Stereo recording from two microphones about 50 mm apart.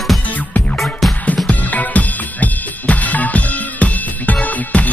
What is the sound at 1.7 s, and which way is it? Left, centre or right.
Drum kit, left.